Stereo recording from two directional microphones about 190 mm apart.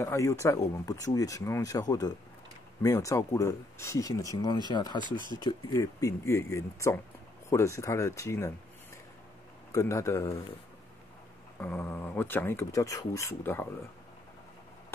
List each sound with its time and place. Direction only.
0.0 s speech: 15° left (ahead or behind)
9.7 s speech: 15° left (ahead or behind)
11.6 s speech: 10° left (ahead or behind)